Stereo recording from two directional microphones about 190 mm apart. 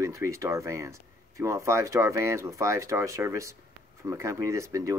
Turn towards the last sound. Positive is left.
turn(degrees=-15)  # may be behind; listen again after turning